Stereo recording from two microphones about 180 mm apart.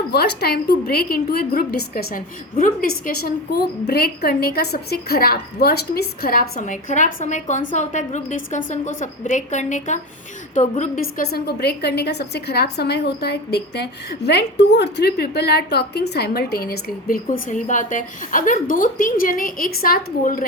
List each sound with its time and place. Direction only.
0.1 s a woman's voice: 65° left (ahead or behind); by 2.7 s 50° left (ahead or behind)
3.2 s a woman's voice: 60° left (ahead or behind)